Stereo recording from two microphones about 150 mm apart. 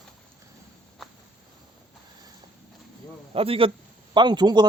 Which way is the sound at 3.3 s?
40° right (ahead or behind).